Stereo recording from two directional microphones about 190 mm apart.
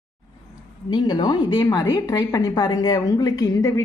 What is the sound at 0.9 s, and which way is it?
A woman's voice, 25° left (ahead or behind).